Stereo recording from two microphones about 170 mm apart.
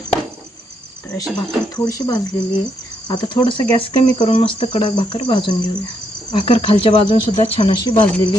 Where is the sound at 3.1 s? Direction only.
25° left (ahead or behind).